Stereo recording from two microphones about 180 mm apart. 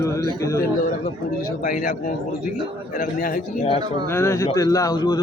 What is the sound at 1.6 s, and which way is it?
Speech, 50° left (ahead or behind).